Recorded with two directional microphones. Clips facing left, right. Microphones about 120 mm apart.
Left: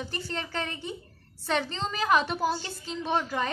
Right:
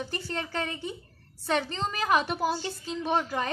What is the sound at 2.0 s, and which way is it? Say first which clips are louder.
A woman's voice: left 1 dB; 15° right (ahead or behind).